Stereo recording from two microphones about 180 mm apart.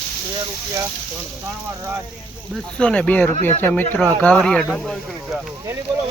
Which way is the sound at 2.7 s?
5° left (ahead or behind).